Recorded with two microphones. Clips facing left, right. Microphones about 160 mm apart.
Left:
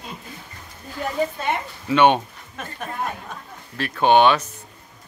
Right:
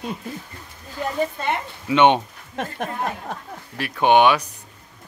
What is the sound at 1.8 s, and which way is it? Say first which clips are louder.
Speech: even; 20° right (ahead or behind).